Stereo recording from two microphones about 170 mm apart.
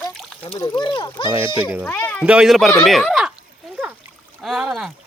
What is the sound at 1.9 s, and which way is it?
Speech, 10° left (ahead or behind).